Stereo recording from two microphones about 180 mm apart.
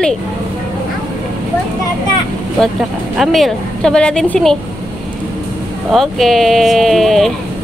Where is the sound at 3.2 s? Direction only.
Centre (ahead or behind).